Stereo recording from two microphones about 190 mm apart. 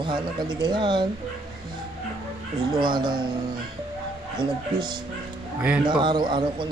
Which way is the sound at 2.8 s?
25° right (ahead or behind).